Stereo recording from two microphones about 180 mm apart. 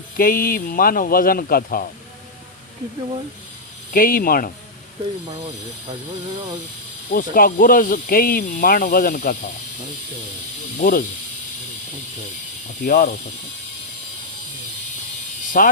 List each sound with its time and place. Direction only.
0.2 s speech: 55° left (ahead or behind)
3.9 s speech: 55° left (ahead or behind)
7.1 s speech: 50° left (ahead or behind)
10.8 s speech: 50° left (ahead or behind)
12.8 s speech: 55° left (ahead or behind)
15.6 s speech: 50° left (ahead or behind)